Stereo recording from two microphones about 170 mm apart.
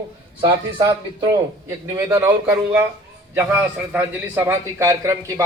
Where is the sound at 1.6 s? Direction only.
15° right (ahead or behind).